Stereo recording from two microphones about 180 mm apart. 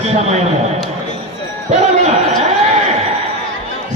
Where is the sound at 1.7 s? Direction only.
40° right (ahead or behind).